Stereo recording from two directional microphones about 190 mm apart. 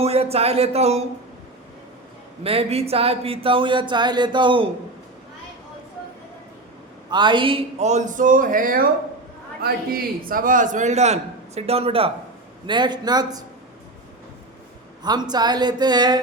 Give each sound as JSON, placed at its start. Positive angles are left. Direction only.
{"t": 0.0, "sound": "speech", "side_deg": -30}
{"t": 2.4, "sound": "speech", "side_deg": -30}
{"t": 7.1, "sound": "a man's voice", "side_deg": -25}
{"t": 15.0, "sound": "speech", "side_deg": -20}